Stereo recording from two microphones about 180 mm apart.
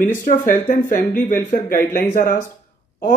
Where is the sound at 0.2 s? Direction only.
45° left (ahead or behind).